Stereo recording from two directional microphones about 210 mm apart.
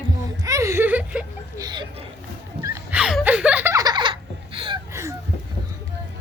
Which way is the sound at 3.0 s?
Centre (ahead or behind).